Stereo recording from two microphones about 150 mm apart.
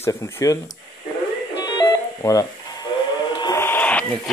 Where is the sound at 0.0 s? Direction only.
20° left (ahead or behind).